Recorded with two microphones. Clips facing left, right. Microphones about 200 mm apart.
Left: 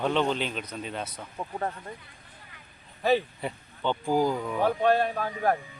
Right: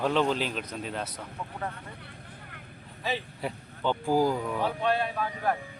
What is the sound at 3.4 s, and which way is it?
Speech, 5° right (ahead or behind).